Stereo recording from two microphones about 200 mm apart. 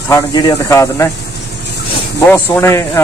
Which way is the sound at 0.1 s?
20° left (ahead or behind).